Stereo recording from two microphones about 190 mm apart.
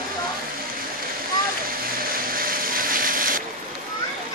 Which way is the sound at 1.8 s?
50° right (ahead or behind).